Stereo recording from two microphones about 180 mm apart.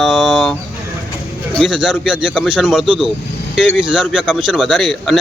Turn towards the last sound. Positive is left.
turn(degrees=0)  # may be behind; listen again after turning